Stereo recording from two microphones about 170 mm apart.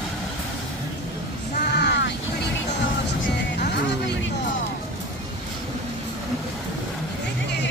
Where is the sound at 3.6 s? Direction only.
85° left.